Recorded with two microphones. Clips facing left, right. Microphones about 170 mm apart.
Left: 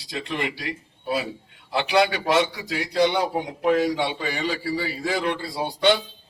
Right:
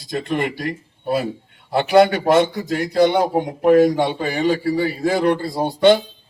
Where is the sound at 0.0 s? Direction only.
50° right (ahead or behind).